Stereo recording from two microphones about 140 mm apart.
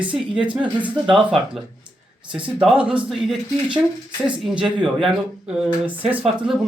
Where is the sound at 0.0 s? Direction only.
10° right (ahead or behind).